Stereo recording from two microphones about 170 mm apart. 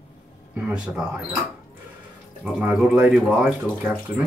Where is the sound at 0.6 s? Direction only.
5° right (ahead or behind).